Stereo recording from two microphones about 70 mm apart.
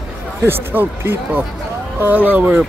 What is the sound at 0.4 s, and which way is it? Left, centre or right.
Speech, right.